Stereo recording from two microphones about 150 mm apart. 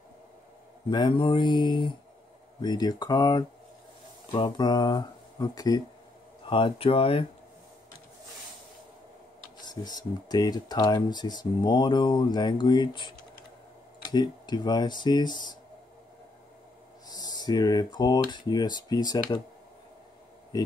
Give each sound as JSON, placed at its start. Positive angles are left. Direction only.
{"t": 0.8, "sound": "speech", "side_deg": 30}
{"t": 6.5, "sound": "speech", "side_deg": 35}
{"t": 9.6, "sound": "speech", "side_deg": 30}
{"t": 17.1, "sound": "speech", "side_deg": 25}